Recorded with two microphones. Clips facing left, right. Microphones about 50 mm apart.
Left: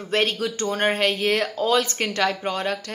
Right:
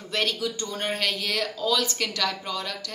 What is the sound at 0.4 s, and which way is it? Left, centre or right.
Speech, left.